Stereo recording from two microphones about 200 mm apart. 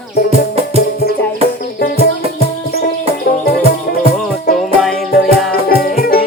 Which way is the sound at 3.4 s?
50° left (ahead or behind).